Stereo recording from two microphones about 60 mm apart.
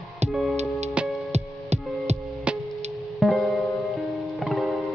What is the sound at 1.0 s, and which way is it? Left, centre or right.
Music, centre.